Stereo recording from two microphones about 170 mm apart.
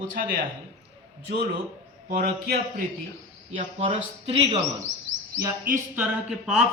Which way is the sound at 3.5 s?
30° right (ahead or behind).